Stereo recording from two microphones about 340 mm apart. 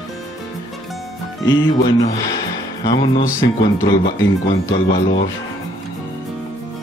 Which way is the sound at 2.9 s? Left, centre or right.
Left.